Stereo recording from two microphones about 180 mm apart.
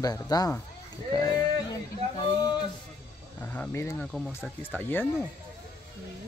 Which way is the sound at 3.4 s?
10° left (ahead or behind).